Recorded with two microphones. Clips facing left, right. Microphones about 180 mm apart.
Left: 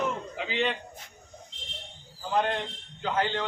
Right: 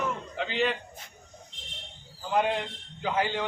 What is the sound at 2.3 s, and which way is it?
A man's voice, 5° right (ahead or behind).